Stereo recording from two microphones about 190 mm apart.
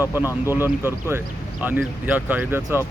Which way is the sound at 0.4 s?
10° right (ahead or behind).